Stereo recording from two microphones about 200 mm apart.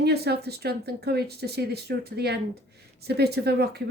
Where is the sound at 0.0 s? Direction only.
55° right (ahead or behind).